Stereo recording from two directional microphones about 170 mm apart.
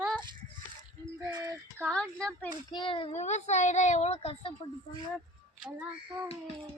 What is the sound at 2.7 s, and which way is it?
Speech, 30° left (ahead or behind).